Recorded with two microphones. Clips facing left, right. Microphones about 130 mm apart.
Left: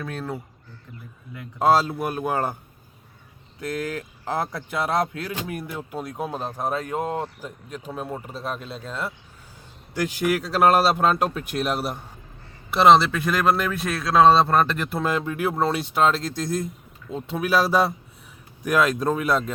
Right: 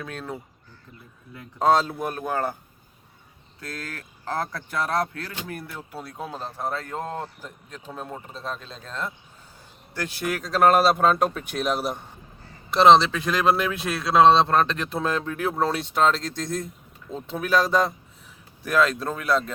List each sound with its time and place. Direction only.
0.0 s speech: centre (ahead or behind)
1.5 s speech: 5° left (ahead or behind)
3.6 s speech: 20° left (ahead or behind)